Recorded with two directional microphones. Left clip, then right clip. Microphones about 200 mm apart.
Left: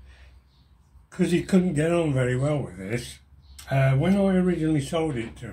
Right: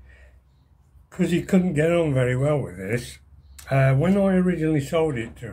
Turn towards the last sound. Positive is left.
turn(degrees=-10)  # may be behind; listen again after turning